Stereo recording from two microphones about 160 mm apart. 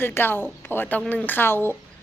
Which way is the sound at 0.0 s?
15° left (ahead or behind).